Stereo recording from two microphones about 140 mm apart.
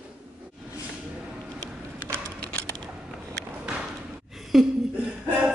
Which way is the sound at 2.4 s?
5° left (ahead or behind).